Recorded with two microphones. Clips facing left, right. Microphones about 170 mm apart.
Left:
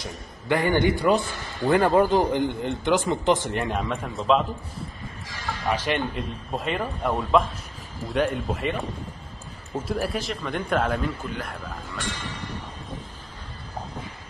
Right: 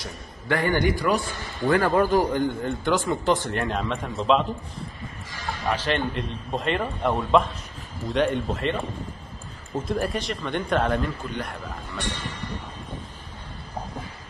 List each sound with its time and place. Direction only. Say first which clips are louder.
0.0 s a man's voice: left 1 dB; 20° left (ahead or behind); by 4.5 s centre (ahead or behind)
5.7 s a man's voice: even; 10° left (ahead or behind)
9.8 s a man's voice: right 1 dB; 5° left (ahead or behind)